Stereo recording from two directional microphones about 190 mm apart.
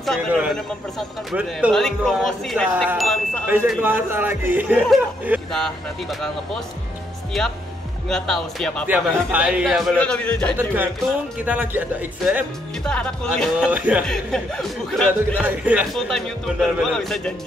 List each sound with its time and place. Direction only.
0.0 s a man's voice: centre (ahead or behind)
3.4 s a man's voice: 10° right (ahead or behind)
7.3 s a man's voice: centre (ahead or behind)
8.8 s a man's voice: 10° right (ahead or behind)
10.6 s speech: 10° right (ahead or behind)
12.8 s a man's voice: 5° left (ahead or behind)
13.7 s speech: 10° right (ahead or behind)
14.0 s a man's voice: 5° left (ahead or behind)
15.4 s a man's voice: 10° right (ahead or behind)